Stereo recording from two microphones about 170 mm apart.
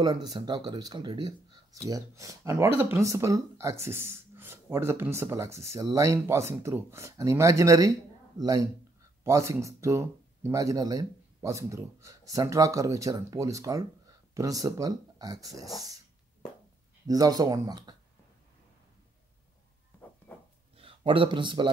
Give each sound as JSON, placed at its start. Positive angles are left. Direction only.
{"t": 0.0, "sound": "speech", "side_deg": -25}
{"t": 17.1, "sound": "speech", "side_deg": -20}
{"t": 20.3, "sound": "a sound", "side_deg": 10}
{"t": 20.7, "sound": "speech", "side_deg": -35}